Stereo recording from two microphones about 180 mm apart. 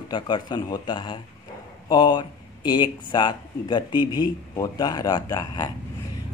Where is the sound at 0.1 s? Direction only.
25° left (ahead or behind).